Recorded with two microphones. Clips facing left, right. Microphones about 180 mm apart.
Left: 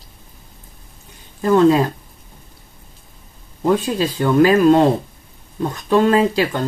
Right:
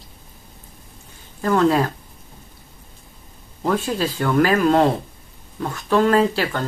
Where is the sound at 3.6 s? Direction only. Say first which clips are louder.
Left 4 dB; 15° left (ahead or behind).